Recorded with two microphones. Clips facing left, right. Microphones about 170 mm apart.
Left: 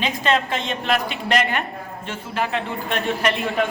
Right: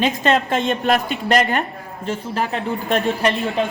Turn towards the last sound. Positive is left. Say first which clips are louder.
# right 2 dB
turn(degrees=-35)  # may be behind; listen again after turning